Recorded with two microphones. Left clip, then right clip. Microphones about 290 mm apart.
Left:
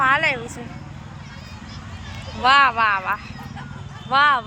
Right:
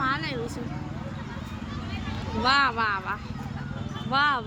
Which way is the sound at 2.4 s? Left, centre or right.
Centre.